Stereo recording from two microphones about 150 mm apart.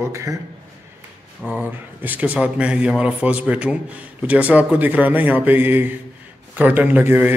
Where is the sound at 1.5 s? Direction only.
10° right (ahead or behind).